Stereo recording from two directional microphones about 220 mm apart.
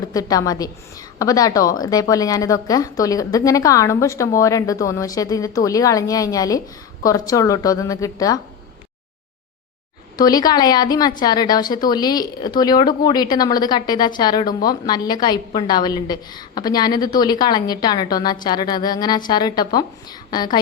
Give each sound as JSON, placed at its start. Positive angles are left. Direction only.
{"t": 0.1, "sound": "a woman's voice", "side_deg": 15}
{"t": 10.2, "sound": "a woman's voice", "side_deg": 15}